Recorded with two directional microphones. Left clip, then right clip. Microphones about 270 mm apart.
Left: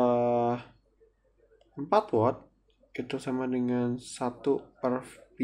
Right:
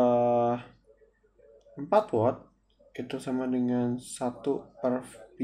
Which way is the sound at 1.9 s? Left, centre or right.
Centre.